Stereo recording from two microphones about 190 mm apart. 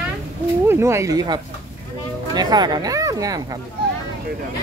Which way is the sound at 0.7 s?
15° right (ahead or behind).